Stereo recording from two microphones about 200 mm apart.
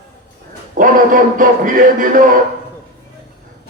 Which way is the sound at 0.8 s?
45° right (ahead or behind).